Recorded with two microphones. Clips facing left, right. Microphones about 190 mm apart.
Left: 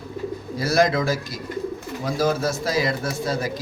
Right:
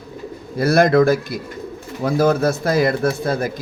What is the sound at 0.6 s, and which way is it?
Speech, 60° right (ahead or behind).